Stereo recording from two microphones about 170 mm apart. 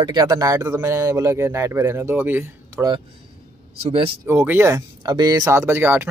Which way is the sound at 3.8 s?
35° right (ahead or behind).